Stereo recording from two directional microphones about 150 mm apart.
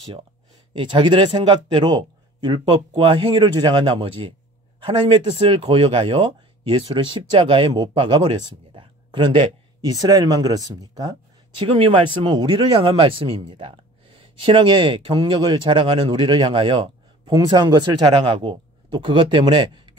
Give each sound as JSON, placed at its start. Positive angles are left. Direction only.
{"t": 0.7, "sound": "speech", "side_deg": -35}